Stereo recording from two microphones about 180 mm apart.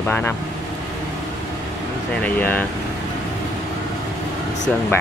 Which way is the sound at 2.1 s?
10° left (ahead or behind).